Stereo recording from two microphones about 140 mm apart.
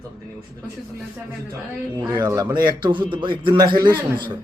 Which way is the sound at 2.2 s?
25° right (ahead or behind).